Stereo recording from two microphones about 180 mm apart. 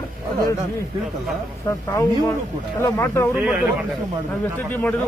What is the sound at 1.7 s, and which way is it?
Speech, 15° left (ahead or behind).